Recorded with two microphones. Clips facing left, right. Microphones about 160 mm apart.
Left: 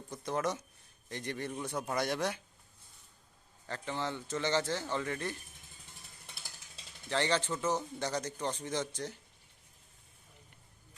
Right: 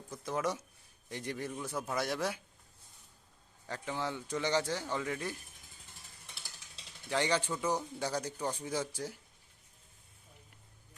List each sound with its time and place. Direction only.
0.1 s a man's voice: 5° right (ahead or behind)
3.7 s a man's voice: 10° right (ahead or behind)
7.1 s a man's voice: 10° right (ahead or behind)